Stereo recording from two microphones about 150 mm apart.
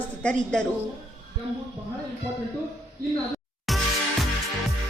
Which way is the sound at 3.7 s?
Centre (ahead or behind).